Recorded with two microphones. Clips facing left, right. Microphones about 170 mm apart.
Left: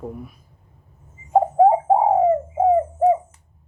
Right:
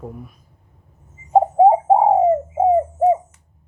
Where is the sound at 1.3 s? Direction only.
20° right (ahead or behind).